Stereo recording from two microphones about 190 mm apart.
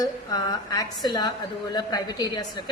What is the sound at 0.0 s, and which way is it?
A woman's voice, 20° left (ahead or behind).